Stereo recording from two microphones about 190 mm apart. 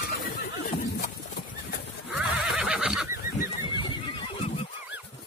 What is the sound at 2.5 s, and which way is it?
Neigh, 5° right (ahead or behind).